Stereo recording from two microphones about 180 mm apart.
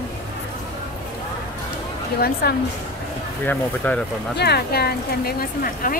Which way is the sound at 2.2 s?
60° left (ahead or behind).